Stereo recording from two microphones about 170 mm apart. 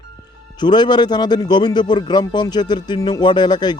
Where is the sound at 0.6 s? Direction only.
25° left (ahead or behind).